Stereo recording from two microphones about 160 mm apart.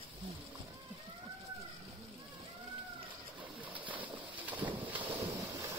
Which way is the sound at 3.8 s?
30° right (ahead or behind).